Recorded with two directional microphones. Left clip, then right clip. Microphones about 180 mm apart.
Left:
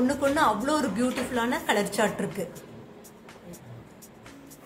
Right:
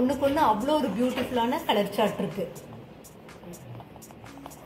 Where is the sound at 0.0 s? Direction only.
15° left (ahead or behind).